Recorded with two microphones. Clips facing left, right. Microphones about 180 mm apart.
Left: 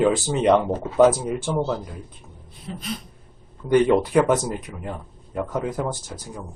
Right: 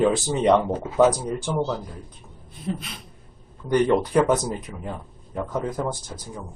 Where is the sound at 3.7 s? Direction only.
5° left (ahead or behind).